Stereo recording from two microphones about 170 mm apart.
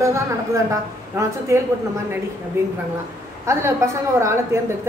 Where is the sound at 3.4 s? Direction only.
15° right (ahead or behind).